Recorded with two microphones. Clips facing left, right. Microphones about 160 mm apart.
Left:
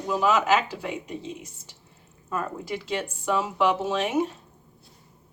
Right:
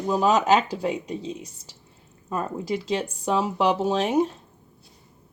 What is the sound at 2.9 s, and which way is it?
Speech, 30° right (ahead or behind).